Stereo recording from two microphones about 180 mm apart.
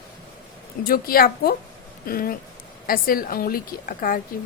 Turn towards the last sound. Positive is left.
turn(degrees=50)  # may be behind; listen again after turning